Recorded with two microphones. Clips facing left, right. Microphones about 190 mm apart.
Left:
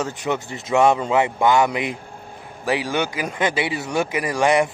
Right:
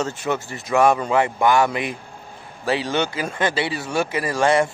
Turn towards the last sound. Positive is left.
turn(degrees=15)  # may be behind; listen again after turning